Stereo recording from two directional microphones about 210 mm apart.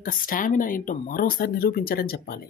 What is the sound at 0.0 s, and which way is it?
Speech, 40° left (ahead or behind).